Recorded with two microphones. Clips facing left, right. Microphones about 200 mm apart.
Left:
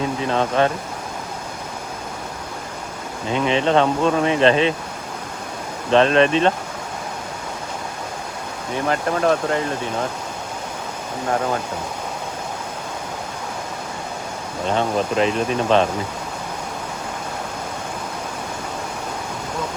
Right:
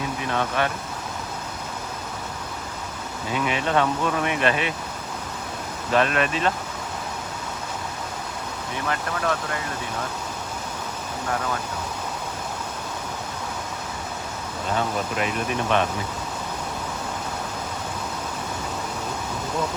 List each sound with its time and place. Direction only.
0.3 s speech: 25° left (ahead or behind)
3.3 s speech: 25° left (ahead or behind)
5.9 s speech: 30° left (ahead or behind)
9.0 s speech: 30° left (ahead or behind)
11.3 s speech: 40° left (ahead or behind)
14.7 s speech: 25° left (ahead or behind)